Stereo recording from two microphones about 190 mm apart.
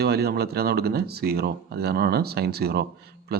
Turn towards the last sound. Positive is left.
turn(degrees=-55)  # may be behind; listen again after turning